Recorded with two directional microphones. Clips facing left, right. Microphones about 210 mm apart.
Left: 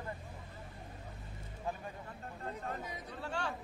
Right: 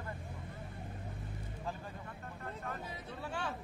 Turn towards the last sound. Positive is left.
turn(degrees=0)  # may be behind; listen again after turning